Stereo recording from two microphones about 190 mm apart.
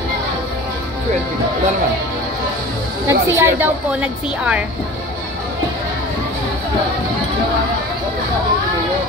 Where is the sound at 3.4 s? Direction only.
10° right (ahead or behind).